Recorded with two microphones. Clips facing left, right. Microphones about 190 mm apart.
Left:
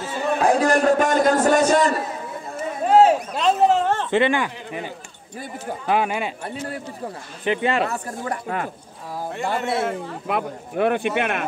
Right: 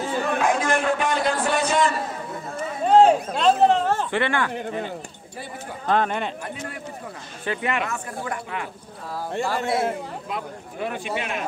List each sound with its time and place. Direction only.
0.4 s a man's voice: 35° left (ahead or behind)
2.5 s chatter: 5° left (ahead or behind)
3.3 s speech: centre (ahead or behind)
4.1 s speech: 15° left (ahead or behind)
5.9 s speech: 10° left (ahead or behind)
6.4 s a man's voice: 35° left (ahead or behind)
9.5 s a man's voice: 25° left (ahead or behind)
10.2 s speech: 65° left (ahead or behind)